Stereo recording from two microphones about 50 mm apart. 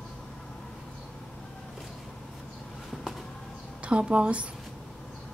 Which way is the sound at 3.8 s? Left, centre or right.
Right.